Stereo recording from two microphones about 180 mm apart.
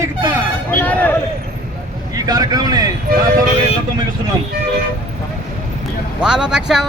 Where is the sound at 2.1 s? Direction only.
20° right (ahead or behind).